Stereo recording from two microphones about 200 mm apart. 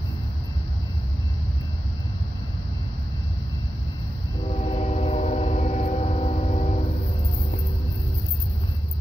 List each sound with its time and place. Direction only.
4.5 s train: 30° left (ahead or behind)